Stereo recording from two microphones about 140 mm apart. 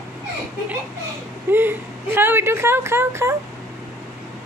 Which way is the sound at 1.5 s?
15° right (ahead or behind).